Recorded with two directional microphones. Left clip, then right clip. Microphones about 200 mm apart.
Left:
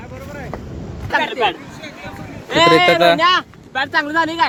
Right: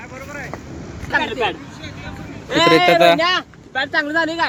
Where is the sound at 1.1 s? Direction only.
10° left (ahead or behind).